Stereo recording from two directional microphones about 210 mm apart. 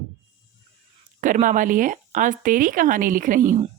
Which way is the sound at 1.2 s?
40° right (ahead or behind).